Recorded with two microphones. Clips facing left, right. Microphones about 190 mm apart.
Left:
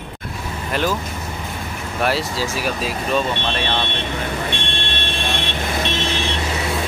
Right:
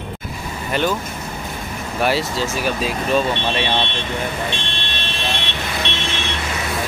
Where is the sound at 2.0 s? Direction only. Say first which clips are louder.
Right 1 dB; centre (ahead or behind).